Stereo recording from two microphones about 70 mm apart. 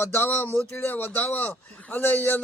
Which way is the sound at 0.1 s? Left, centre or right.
Left.